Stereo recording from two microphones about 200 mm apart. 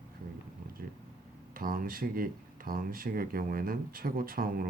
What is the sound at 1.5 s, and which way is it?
Speech, 45° right (ahead or behind).